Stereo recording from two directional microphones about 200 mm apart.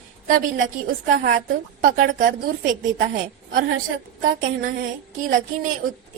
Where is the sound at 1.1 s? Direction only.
40° right (ahead or behind).